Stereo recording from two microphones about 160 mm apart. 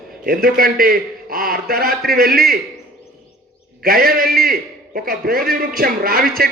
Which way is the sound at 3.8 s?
65° right (ahead or behind).